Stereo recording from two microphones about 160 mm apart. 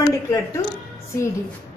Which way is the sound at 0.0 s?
20° left (ahead or behind).